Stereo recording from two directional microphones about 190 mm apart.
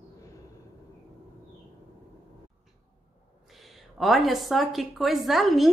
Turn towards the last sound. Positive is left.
turn(degrees=0)  # may be behind; listen again after turning